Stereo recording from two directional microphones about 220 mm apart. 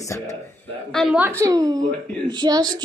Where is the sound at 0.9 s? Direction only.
Centre (ahead or behind); by 2.8 s 15° right (ahead or behind).